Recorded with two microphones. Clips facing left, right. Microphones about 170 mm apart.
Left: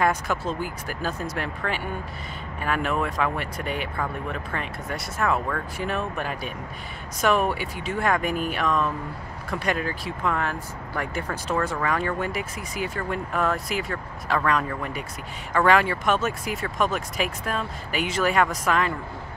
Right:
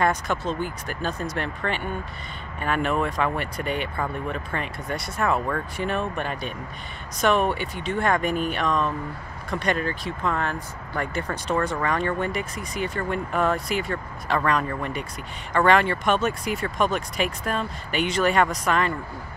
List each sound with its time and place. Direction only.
0.0 s speech: 5° left (ahead or behind)